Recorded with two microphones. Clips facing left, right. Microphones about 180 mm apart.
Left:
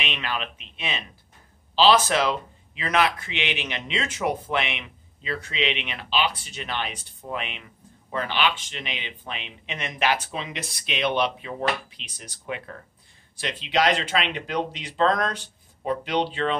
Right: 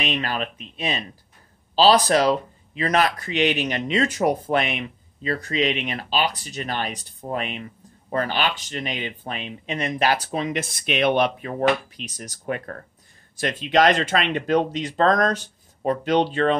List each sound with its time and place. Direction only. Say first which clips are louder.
0.0 s a man's voice: right 5 dB; 40° right (ahead or behind)